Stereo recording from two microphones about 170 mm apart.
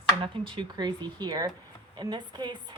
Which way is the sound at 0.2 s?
30° right (ahead or behind).